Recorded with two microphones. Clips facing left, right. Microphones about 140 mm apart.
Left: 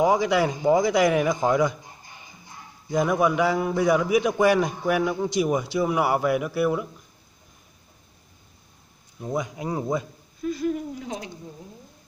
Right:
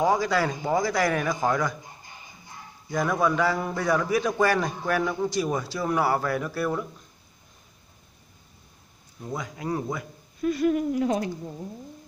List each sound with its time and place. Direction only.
0.0 s a man's voice: 15° left (ahead or behind)
2.9 s a man's voice: 15° left (ahead or behind)
9.2 s speech: 20° left (ahead or behind)
10.4 s speech: 70° right (ahead or behind)